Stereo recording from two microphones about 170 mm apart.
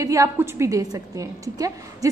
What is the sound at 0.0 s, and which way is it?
A woman's voice, 20° right (ahead or behind).